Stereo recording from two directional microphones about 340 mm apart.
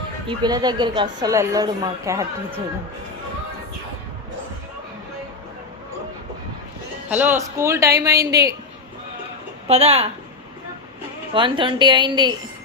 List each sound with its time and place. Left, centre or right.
0.3 s a woman's voice: centre
7.1 s a woman's voice: centre
9.6 s a woman's voice: centre
11.3 s a woman's voice: centre